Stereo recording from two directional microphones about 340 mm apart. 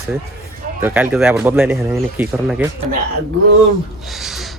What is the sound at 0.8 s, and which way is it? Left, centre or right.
Speech, centre.